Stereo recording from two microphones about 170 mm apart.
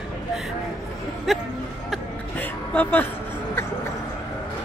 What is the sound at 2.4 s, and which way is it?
Music, 10° left (ahead or behind).